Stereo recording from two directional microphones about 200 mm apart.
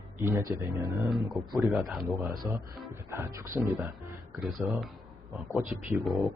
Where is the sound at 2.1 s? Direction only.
Centre (ahead or behind).